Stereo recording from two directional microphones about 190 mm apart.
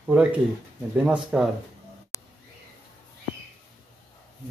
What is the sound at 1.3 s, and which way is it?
Speech, 5° right (ahead or behind).